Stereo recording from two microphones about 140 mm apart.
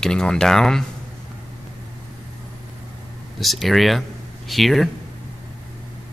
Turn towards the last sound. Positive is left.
turn(degrees=0)  # may be behind; listen again after turning